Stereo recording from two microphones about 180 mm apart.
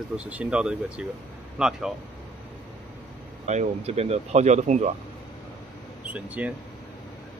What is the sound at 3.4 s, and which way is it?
Speech, 40° right (ahead or behind).